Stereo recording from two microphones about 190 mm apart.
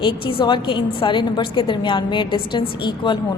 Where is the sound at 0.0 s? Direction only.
25° left (ahead or behind).